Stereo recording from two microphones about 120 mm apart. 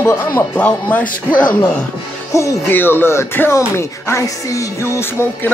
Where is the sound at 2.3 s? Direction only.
25° left (ahead or behind).